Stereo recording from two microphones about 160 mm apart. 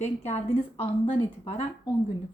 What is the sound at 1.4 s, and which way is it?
Speech, 40° left (ahead or behind).